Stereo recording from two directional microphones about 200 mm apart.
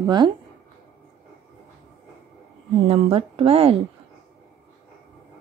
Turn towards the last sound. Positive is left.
turn(degrees=-30)  # may be behind; listen again after turning